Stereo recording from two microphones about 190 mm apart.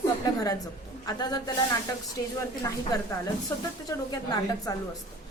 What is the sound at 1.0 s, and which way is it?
Speech, 20° left (ahead or behind).